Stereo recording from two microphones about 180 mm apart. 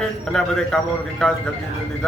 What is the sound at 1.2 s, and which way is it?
Speech, 5° left (ahead or behind).